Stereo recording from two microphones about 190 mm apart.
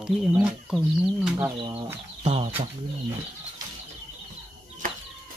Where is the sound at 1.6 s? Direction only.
25° right (ahead or behind).